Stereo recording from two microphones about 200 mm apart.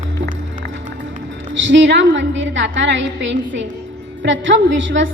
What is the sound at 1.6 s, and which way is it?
A woman's voice, 65° right (ahead or behind).